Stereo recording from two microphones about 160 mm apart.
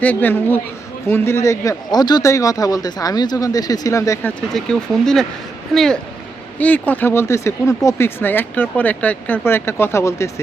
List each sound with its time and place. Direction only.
0.0 s a man's voice: 10° left (ahead or behind)